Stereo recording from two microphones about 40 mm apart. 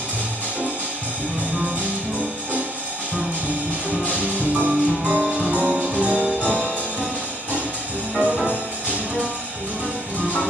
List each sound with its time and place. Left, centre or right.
4.1 s music: right
8.5 s music: right